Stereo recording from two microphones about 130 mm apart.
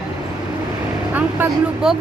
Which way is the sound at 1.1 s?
10° right (ahead or behind).